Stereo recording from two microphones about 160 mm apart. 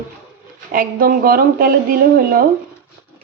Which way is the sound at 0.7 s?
65° right (ahead or behind).